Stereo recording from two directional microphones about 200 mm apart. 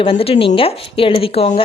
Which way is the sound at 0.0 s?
25° left (ahead or behind).